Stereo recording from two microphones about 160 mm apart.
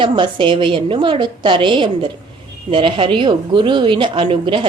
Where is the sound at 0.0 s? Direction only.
30° right (ahead or behind).